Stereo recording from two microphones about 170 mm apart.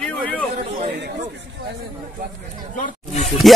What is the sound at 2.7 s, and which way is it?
Chatter, 50° left (ahead or behind).